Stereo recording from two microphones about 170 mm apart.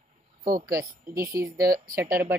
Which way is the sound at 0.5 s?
60° right (ahead or behind).